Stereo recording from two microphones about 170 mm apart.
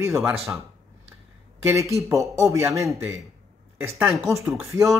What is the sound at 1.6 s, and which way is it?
A man's voice, 15° right (ahead or behind).